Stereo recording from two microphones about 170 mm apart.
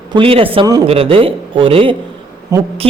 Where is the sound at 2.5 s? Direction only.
20° right (ahead or behind).